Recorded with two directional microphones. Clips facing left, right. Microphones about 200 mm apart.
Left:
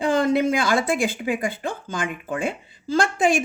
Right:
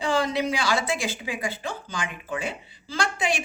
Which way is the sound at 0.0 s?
50° left (ahead or behind).